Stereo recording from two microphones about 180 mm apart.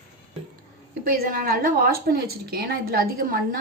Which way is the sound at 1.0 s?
50° right (ahead or behind).